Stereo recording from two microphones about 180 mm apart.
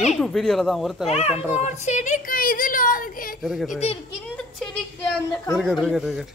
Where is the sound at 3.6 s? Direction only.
40° left (ahead or behind).